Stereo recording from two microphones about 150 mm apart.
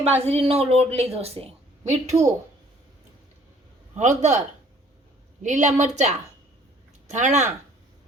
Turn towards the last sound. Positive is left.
turn(degrees=-55)  # may be behind; listen again after turning